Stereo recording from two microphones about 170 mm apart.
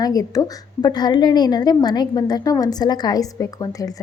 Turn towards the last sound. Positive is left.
turn(degrees=20)  # may be behind; listen again after turning